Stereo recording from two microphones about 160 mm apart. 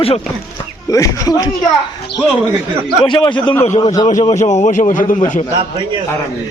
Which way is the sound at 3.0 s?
30° left (ahead or behind).